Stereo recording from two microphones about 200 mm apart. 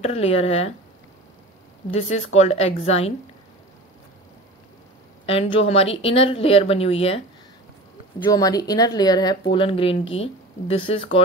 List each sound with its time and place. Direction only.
0.0 s a woman's voice: 30° left (ahead or behind)
1.9 s a woman's voice: 30° left (ahead or behind)
5.2 s speech: 30° left (ahead or behind)
8.2 s speech: 20° left (ahead or behind)